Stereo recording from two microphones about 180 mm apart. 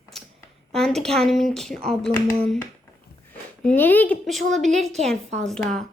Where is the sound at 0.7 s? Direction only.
Centre (ahead or behind).